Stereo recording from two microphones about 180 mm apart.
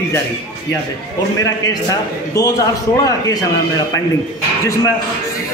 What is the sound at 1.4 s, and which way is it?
A woman's voice, 20° left (ahead or behind).